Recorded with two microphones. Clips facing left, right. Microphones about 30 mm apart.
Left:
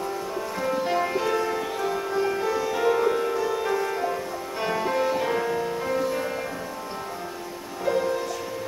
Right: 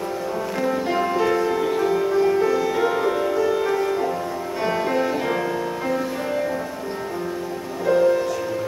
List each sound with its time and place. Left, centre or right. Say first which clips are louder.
0.6 s music: right 2 dB; centre
7.8 s music: right 7 dB; centre